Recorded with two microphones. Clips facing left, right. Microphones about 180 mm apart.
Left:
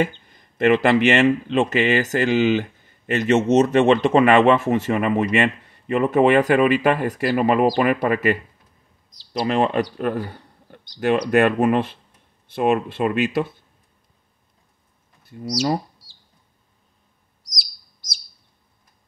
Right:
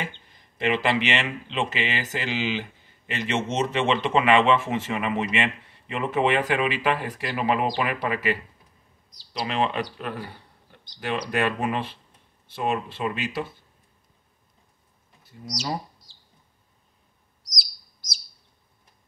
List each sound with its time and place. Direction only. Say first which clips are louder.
0.0 s speech: left 12 dB; 50° left (ahead or behind)